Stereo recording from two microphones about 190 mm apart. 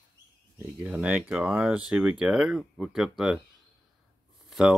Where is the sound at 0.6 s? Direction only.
5° right (ahead or behind).